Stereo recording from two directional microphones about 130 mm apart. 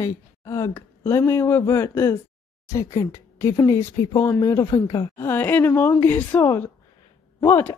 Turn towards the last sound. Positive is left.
turn(degrees=20)  # may be behind; listen again after turning